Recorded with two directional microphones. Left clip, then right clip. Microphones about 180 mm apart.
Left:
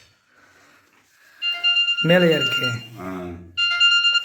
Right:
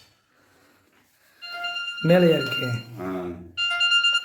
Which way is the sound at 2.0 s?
10° left (ahead or behind).